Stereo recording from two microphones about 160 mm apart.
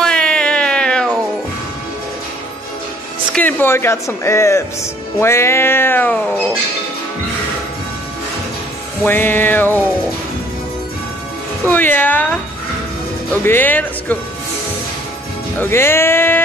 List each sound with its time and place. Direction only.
0.0 s a sound: 5° left (ahead or behind)
3.3 s speech: 10° left (ahead or behind)
5.2 s cat: 15° left (ahead or behind)
9.0 s cat: 15° left (ahead or behind)
11.6 s cat: 10° left (ahead or behind)
13.5 s cat: 10° left (ahead or behind)
15.6 s cat: 15° left (ahead or behind)